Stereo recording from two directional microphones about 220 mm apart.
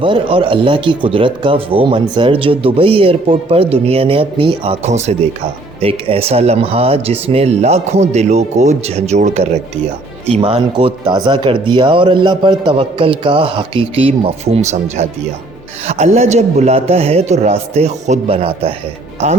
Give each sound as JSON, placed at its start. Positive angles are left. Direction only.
{"t": 0.0, "sound": "speech", "side_deg": -25}